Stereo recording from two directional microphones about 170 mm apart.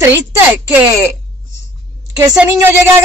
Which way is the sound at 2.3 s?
10° right (ahead or behind).